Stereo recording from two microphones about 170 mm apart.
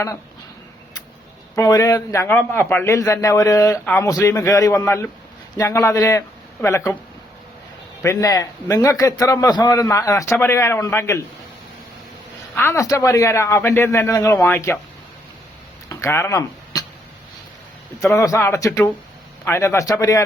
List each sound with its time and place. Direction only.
1.5 s a man's voice: 20° left (ahead or behind)
8.0 s a man's voice: 20° left (ahead or behind)
12.5 s a man's voice: 15° left (ahead or behind)
15.9 s a sound: 15° left (ahead or behind)
18.0 s a man's voice: 20° left (ahead or behind)